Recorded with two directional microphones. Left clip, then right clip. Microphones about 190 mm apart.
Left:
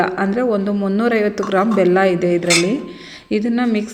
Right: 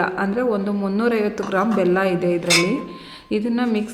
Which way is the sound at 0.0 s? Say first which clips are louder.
Left 3 dB; 15° left (ahead or behind).